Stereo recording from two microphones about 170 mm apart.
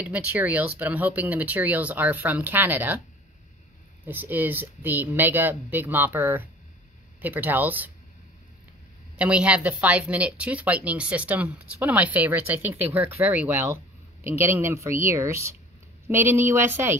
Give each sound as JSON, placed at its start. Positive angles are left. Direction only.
{"t": 0.0, "sound": "speech", "side_deg": -10}
{"t": 4.0, "sound": "speech", "side_deg": -10}
{"t": 9.1, "sound": "speech", "side_deg": -5}